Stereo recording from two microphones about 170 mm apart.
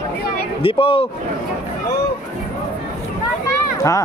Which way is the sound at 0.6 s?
35° left (ahead or behind).